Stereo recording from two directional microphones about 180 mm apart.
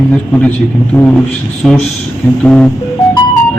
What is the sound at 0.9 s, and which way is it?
Speech, 10° left (ahead or behind).